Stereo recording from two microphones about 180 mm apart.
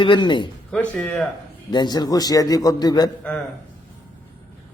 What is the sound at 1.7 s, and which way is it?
A man's voice, 25° left (ahead or behind).